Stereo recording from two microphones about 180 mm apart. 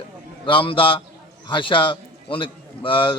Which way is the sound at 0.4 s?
30° left (ahead or behind).